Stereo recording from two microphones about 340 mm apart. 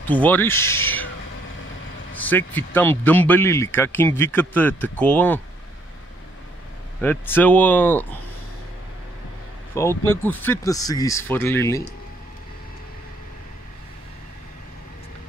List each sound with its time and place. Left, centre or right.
0.0 s speech: centre
2.1 s speech: centre
7.0 s speech: centre
9.8 s speech: centre